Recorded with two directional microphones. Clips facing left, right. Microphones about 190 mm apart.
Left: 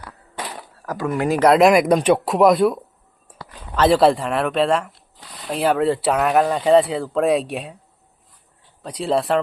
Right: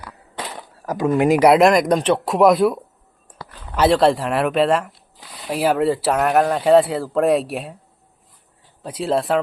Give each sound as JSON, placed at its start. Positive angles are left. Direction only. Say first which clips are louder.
{"t": 0.9, "sound": "speech", "louder": "right 5 dB", "side_deg": -20}
{"t": 1.5, "sound": "speech", "louder": "left 1 dB", "side_deg": 0}
{"t": 3.8, "sound": "speech", "louder": "even", "side_deg": 0}
{"t": 8.8, "sound": "speech", "louder": "even", "side_deg": 0}